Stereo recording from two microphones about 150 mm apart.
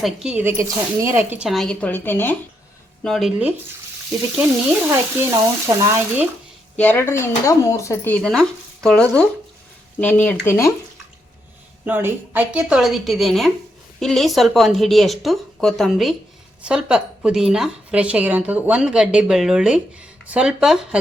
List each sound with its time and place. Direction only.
0.0 s speech: 5° right (ahead or behind)
0.9 s speech: 15° right (ahead or behind)
1.5 s speech: 5° left (ahead or behind)
3.0 s speech: centre (ahead or behind)
4.9 s speech: 20° right (ahead or behind)
6.7 s speech: 10° left (ahead or behind)
11.9 s speech: 10° right (ahead or behind)